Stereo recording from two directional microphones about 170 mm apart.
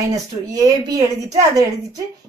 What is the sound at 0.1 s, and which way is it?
A woman's voice, 20° right (ahead or behind).